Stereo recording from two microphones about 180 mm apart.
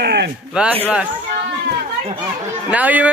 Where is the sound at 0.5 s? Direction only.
5° right (ahead or behind).